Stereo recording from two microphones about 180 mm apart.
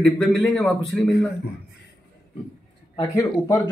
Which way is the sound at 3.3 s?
15° left (ahead or behind).